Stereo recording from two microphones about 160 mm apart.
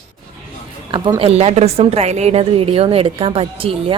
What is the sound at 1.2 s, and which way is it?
A woman's voice, 40° right (ahead or behind).